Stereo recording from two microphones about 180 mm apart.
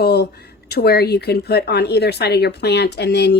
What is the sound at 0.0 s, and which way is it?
A woman's voice, 65° left (ahead or behind).